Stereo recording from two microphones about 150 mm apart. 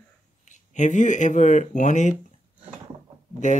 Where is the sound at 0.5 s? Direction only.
55° left (ahead or behind).